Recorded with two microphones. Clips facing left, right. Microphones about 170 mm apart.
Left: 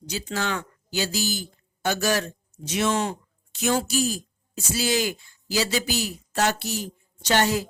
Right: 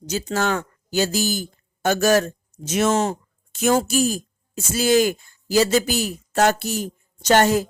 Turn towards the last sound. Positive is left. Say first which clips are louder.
# right 6 dB
turn(degrees=-50)  # may be behind; listen again after turning